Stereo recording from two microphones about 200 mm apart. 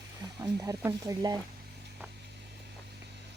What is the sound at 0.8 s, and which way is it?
Speech, 15° right (ahead or behind).